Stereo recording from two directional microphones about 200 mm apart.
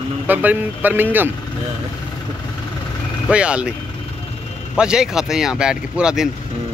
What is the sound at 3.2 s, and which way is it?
Speech, 5° right (ahead or behind).